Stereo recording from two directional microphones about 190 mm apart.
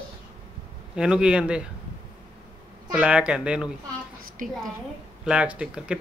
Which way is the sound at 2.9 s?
5° right (ahead or behind).